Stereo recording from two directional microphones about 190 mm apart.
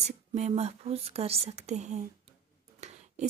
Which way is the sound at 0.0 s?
35° right (ahead or behind).